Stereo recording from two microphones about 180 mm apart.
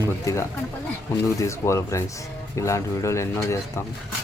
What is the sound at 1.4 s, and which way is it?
Speech, 15° left (ahead or behind).